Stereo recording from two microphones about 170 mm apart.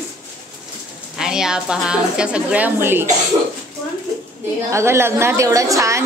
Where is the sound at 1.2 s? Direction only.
5° right (ahead or behind).